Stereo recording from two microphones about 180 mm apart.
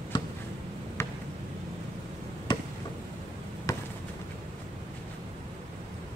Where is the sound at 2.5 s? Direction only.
25° left (ahead or behind).